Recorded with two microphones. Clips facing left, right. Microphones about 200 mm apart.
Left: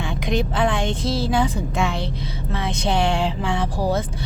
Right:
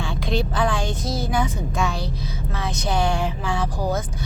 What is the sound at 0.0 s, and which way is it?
A woman's voice, 15° left (ahead or behind).